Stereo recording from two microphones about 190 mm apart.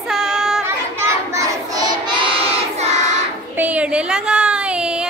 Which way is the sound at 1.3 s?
20° right (ahead or behind).